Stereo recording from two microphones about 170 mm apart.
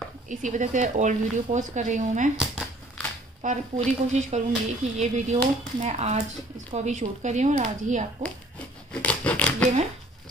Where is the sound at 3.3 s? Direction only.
45° right (ahead or behind).